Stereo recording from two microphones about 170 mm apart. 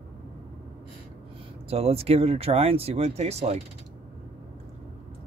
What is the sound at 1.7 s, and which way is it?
Speech, 35° right (ahead or behind).